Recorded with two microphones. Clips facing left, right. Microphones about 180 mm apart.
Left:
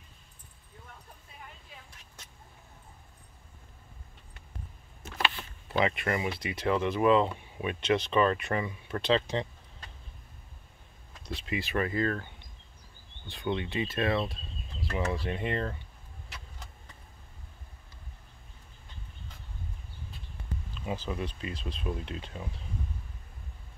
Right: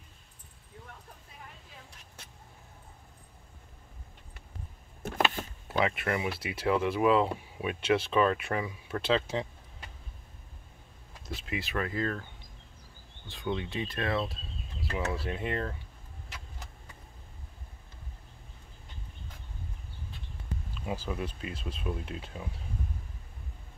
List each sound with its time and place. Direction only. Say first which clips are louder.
5.0 s a sound: right 4 dB; 50° right (ahead or behind)
5.7 s speech: left 1 dB; centre (ahead or behind)
11.2 s speech: left 2 dB; centre (ahead or behind)
20.8 s speech: left 1 dB; 5° right (ahead or behind)